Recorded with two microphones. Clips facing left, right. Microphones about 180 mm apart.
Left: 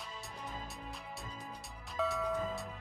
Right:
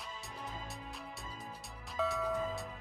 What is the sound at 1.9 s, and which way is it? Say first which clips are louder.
Music: even; centre (ahead or behind).